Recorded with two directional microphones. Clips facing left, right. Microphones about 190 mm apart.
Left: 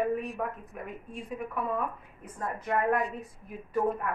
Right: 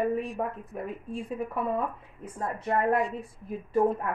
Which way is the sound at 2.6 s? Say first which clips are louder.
Right 2 dB; 30° right (ahead or behind).